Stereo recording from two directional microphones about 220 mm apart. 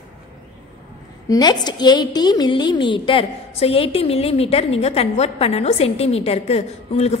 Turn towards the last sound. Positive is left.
turn(degrees=30)  # may be behind; listen again after turning